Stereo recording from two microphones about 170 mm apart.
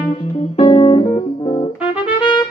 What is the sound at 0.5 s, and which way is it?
Music, 30° left (ahead or behind).